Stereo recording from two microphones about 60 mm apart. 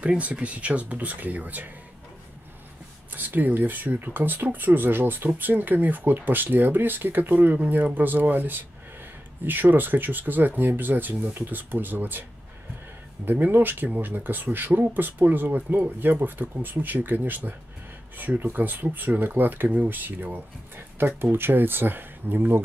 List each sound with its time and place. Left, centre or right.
0.0 s speech: right
3.1 s speech: right